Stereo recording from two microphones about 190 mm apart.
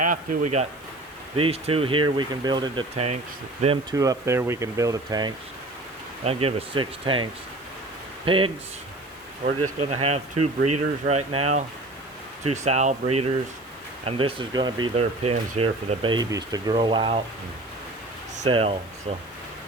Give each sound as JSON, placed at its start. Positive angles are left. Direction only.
{"t": 0.1, "sound": "speech", "side_deg": -45}
{"t": 1.4, "sound": "speech", "side_deg": -30}
{"t": 3.9, "sound": "speech", "side_deg": -20}
{"t": 6.2, "sound": "speech", "side_deg": -30}
{"t": 18.4, "sound": "speech", "side_deg": -30}